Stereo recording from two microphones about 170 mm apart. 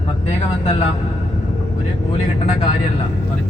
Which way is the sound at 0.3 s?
40° left (ahead or behind).